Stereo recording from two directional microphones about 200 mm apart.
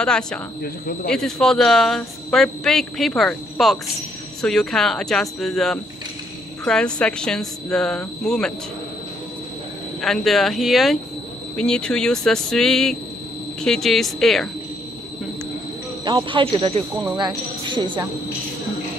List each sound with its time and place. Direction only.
0.0 s a woman's voice: 5° left (ahead or behind)
10.0 s a woman's voice: centre (ahead or behind)
16.0 s speech: 25° right (ahead or behind)
17.0 s a woman's voice: 5° right (ahead or behind)
17.3 s speech: 25° right (ahead or behind)